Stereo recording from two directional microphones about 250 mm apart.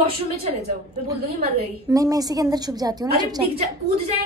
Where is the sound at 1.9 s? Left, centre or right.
Centre.